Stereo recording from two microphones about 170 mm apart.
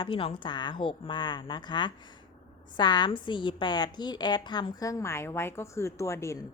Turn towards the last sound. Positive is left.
turn(degrees=15)  # may be behind; listen again after turning